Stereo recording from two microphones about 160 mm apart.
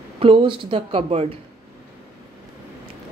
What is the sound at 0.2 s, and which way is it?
A woman's voice, 30° right (ahead or behind).